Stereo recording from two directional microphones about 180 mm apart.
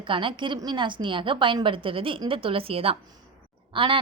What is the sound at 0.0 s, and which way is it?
A woman's voice, 30° right (ahead or behind).